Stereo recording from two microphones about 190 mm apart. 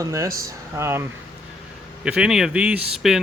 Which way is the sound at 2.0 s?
5° right (ahead or behind).